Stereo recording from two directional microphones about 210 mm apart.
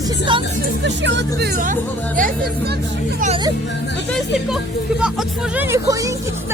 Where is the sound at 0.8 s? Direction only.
60° right (ahead or behind); by 3.4 s 40° right (ahead or behind).